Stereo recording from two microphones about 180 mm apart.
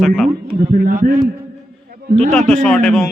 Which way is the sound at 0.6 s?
50° right (ahead or behind).